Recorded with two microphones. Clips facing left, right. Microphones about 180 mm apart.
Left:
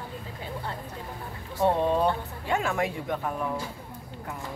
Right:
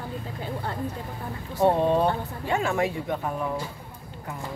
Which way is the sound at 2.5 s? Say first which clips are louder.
Right 2 dB; centre (ahead or behind).